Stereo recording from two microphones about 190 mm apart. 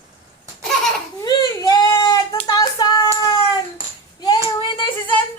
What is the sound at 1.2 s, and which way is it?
Baby cry, 20° left (ahead or behind).